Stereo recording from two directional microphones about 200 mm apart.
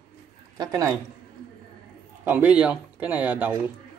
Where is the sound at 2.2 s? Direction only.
10° right (ahead or behind).